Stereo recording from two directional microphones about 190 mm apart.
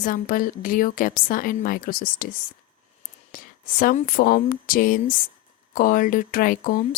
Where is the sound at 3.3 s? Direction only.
45° left (ahead or behind).